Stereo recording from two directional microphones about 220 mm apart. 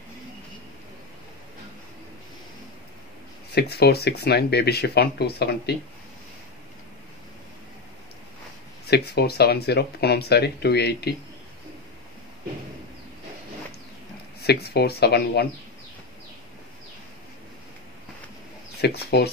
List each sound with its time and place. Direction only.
3.5 s speech: 45° left (ahead or behind)
8.9 s speech: 45° left (ahead or behind)
14.4 s speech: 45° left (ahead or behind)
18.8 s speech: 50° left (ahead or behind)